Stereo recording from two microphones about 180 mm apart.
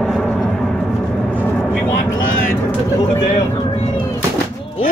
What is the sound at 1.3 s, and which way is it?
Vehicle, 5° left (ahead or behind).